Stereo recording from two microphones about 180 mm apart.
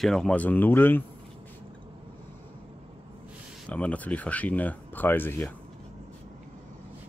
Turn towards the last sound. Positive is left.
turn(degrees=10)  # may be behind; listen again after turning